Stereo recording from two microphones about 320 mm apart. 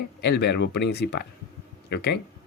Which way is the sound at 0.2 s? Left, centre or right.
Left.